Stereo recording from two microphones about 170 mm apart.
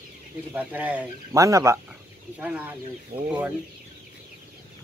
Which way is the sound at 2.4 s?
5° right (ahead or behind).